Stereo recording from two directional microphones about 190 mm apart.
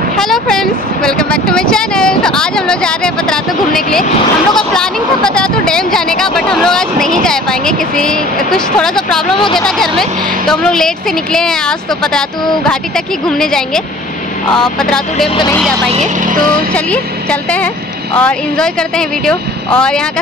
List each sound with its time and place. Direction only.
0.2 s speech: centre (ahead or behind)
15.2 s speech: 25° left (ahead or behind)
15.9 s speech: 45° right (ahead or behind)
16.7 s speech: 5° left (ahead or behind)